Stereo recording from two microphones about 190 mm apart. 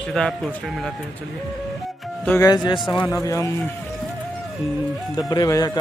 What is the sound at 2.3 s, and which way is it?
Speech, 20° left (ahead or behind).